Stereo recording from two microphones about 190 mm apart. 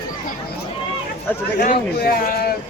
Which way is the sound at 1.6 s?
45° left (ahead or behind).